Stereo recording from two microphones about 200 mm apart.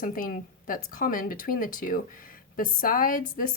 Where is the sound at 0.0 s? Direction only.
45° left (ahead or behind).